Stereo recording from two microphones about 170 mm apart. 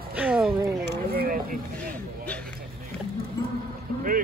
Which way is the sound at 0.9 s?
60° right (ahead or behind).